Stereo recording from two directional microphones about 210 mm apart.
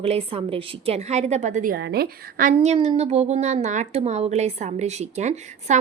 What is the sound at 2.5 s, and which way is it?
A woman's voice, 30° right (ahead or behind).